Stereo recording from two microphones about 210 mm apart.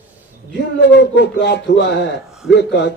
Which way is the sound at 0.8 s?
55° left (ahead or behind).